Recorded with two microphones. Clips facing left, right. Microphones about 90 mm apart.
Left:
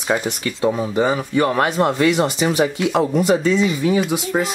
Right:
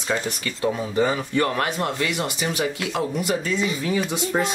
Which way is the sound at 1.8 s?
35° left (ahead or behind).